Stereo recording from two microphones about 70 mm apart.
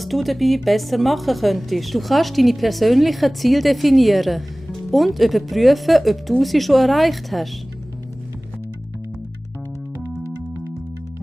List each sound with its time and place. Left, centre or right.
0.0 s speech: centre
9.9 s music: right